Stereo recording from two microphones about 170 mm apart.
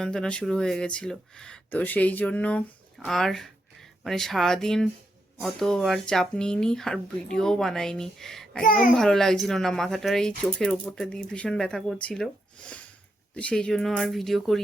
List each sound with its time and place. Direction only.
0.0 s speech: 5° left (ahead or behind)
8.6 s a child's voice: 55° left (ahead or behind)
9.0 s speech: 5° left (ahead or behind)